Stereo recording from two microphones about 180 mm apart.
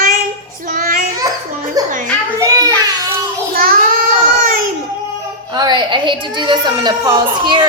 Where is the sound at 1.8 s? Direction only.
20° right (ahead or behind).